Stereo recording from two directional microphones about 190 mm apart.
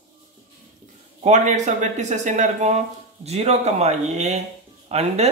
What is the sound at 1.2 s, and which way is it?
Speech, 40° right (ahead or behind).